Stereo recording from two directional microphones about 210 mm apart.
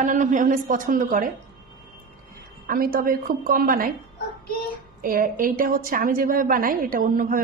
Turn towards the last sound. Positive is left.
turn(degrees=-40)  # may be behind; listen again after turning